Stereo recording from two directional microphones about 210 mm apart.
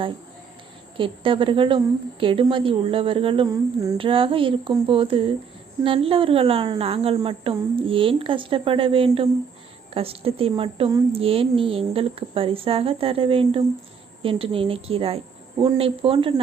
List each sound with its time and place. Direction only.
0.9 s a woman's voice: 25° right (ahead or behind)